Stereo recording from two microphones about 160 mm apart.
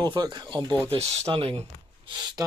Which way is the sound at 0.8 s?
35° right (ahead or behind).